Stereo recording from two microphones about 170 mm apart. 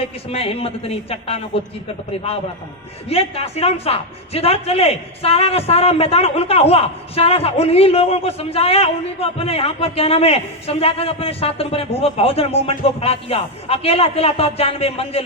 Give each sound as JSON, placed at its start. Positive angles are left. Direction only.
{"t": 0.3, "sound": "speech", "side_deg": 35}
{"t": 3.1, "sound": "speech", "side_deg": 35}